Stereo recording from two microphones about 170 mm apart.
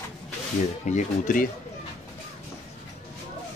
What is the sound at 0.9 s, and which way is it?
Speech, 50° left (ahead or behind).